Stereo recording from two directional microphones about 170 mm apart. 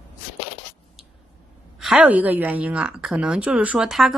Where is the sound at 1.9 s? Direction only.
5° right (ahead or behind).